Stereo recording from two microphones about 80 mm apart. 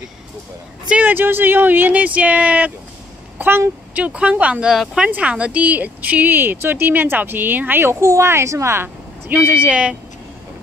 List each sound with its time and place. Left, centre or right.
0.8 s speech: centre
3.3 s speech: right
4.0 s speech: centre
9.5 s speech: centre